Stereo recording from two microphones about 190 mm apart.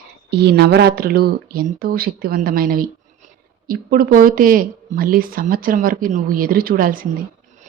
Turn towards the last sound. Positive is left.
turn(degrees=-50)  # may be behind; listen again after turning